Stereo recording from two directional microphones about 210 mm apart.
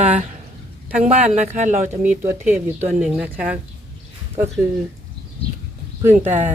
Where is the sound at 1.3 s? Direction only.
35° right (ahead or behind).